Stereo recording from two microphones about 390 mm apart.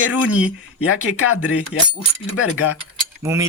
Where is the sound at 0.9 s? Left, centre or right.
Left.